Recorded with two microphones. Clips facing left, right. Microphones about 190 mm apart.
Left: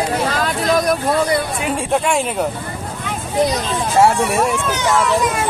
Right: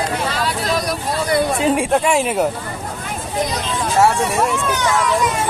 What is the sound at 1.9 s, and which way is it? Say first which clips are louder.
Speech: right 1 dB; centre (ahead or behind).